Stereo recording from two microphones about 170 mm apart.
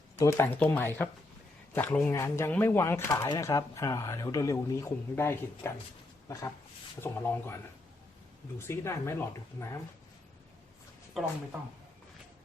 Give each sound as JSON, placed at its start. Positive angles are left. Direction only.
{"t": 0.2, "sound": "speech", "side_deg": 20}
{"t": 7.0, "sound": "speech", "side_deg": 15}
{"t": 11.2, "sound": "speech", "side_deg": 0}